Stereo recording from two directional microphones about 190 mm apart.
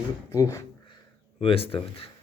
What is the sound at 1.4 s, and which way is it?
Speech, 30° left (ahead or behind).